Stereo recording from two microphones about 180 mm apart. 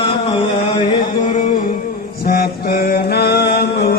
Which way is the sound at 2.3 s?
55° left (ahead or behind).